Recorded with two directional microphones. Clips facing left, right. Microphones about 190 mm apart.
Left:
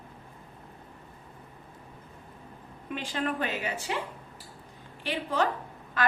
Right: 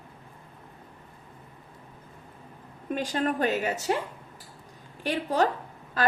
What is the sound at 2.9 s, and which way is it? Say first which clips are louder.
A woman's voice: right 4 dB; 45° right (ahead or behind).